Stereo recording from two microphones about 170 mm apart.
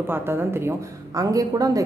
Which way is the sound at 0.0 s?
15° right (ahead or behind).